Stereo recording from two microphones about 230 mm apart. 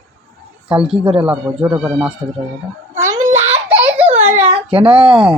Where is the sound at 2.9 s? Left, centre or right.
Centre.